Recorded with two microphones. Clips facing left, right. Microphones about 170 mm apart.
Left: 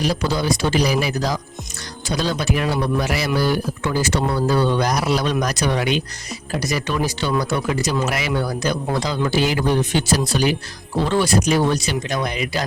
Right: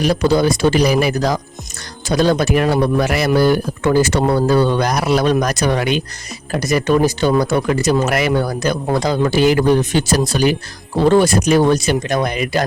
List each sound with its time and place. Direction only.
0.0 s speech: 55° right (ahead or behind)